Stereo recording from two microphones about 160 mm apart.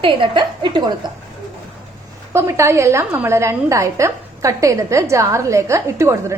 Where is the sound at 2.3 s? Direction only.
15° right (ahead or behind).